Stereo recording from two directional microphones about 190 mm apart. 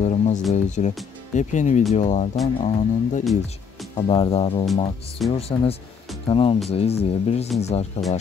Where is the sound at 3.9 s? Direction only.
30° left (ahead or behind).